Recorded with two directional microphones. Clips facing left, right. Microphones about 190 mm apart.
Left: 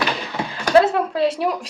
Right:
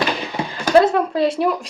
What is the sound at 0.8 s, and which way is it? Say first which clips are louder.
Speech: right 2 dB; 5° left (ahead or behind).